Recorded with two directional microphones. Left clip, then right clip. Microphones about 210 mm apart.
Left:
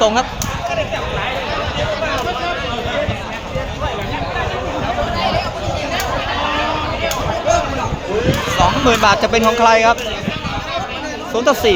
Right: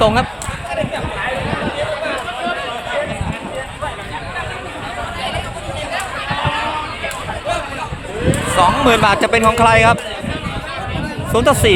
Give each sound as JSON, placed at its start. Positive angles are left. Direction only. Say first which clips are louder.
{"t": 0.0, "sound": "speech", "louder": "even", "side_deg": -15}
{"t": 8.5, "sound": "speech", "louder": "right 2 dB", "side_deg": -15}
{"t": 11.3, "sound": "speech", "louder": "right 1 dB", "side_deg": -25}